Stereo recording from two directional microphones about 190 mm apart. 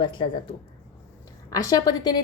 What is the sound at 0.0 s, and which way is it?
Speech, 25° left (ahead or behind).